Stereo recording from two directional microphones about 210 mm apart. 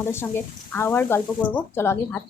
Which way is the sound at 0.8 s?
10° left (ahead or behind).